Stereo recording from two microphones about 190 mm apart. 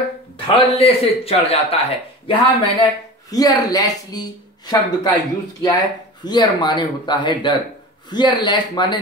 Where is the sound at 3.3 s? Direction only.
20° left (ahead or behind).